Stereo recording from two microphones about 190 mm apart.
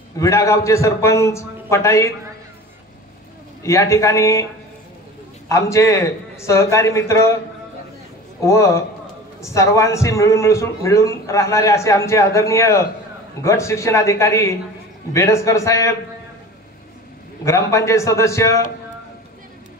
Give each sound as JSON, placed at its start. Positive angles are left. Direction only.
{"t": 0.2, "sound": "a man's voice", "side_deg": 15}
{"t": 3.6, "sound": "a man's voice", "side_deg": 15}
{"t": 5.5, "sound": "a man's voice", "side_deg": 15}
{"t": 8.4, "sound": "a man's voice", "side_deg": 15}
{"t": 17.5, "sound": "a man's voice", "side_deg": 15}